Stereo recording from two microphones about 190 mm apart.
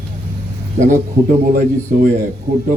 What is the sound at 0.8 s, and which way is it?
A man's voice, 40° right (ahead or behind).